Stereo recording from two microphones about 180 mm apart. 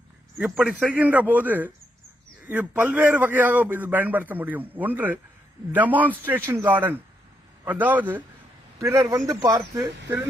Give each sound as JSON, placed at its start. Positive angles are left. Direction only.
{"t": 0.4, "sound": "a man's voice", "side_deg": -5}